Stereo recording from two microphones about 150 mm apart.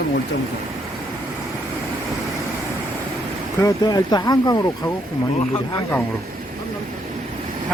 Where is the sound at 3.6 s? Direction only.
25° left (ahead or behind).